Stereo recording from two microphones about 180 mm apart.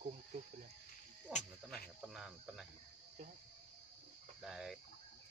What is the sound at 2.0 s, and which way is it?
Speech, 5° right (ahead or behind).